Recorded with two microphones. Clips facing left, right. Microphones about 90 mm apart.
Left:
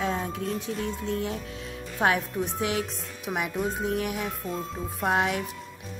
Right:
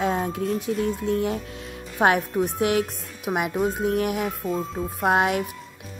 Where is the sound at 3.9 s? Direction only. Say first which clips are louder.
Right 5 dB; 50° right (ahead or behind).